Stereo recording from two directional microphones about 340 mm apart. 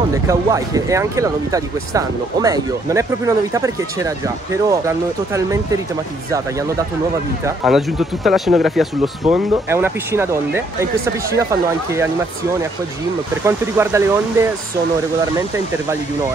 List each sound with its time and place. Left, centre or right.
0.1 s speech: centre
7.4 s speech: centre
13.5 s speech: centre